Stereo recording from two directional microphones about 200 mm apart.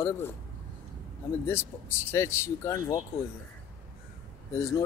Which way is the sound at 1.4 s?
10° left (ahead or behind).